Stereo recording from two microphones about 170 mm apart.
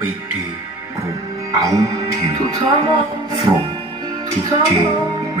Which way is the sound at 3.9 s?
20° right (ahead or behind).